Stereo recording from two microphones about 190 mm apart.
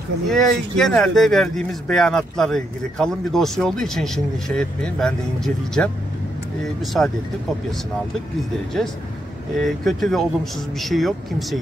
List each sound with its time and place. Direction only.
0.3 s speech: centre (ahead or behind)
9.6 s speech: centre (ahead or behind)